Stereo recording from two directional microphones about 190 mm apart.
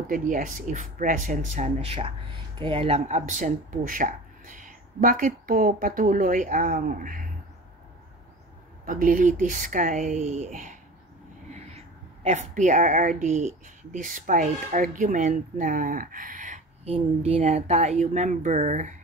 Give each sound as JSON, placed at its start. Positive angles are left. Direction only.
{"t": 0.1, "sound": "speech", "side_deg": -45}
{"t": 8.8, "sound": "speech", "side_deg": -45}
{"t": 11.5, "sound": "a sound", "side_deg": -35}
{"t": 13.9, "sound": "speech", "side_deg": -45}